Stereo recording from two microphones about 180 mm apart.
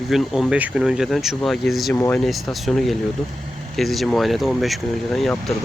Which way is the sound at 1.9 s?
10° left (ahead or behind).